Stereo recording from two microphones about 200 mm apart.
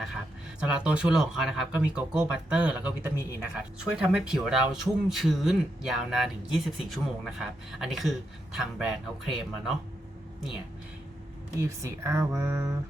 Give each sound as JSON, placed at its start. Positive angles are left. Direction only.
{"t": 0.7, "sound": "speech", "side_deg": -5}
{"t": 11.6, "sound": "speech", "side_deg": -15}